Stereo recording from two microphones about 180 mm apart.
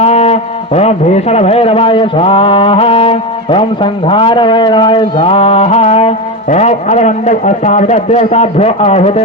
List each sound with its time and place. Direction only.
0.0 s a man's voice: 35° left (ahead or behind)